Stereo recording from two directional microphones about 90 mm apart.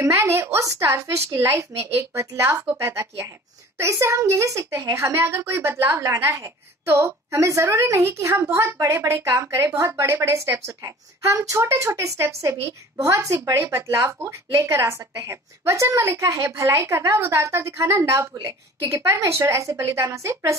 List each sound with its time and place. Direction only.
0.0 s a woman's voice: 30° right (ahead or behind)